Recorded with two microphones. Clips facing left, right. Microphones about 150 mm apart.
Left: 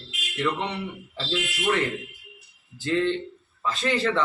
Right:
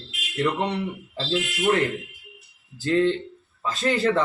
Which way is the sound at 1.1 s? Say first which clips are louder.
Right 3 dB; 40° right (ahead or behind).